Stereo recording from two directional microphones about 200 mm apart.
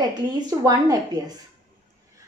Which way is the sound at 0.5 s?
20° right (ahead or behind).